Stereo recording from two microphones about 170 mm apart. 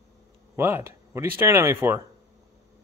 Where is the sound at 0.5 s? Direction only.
15° right (ahead or behind).